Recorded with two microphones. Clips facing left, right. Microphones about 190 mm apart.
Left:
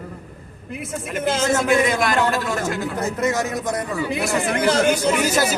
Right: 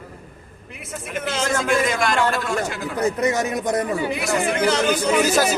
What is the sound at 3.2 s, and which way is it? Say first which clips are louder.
Speech: right 1 dB; 20° right (ahead or behind).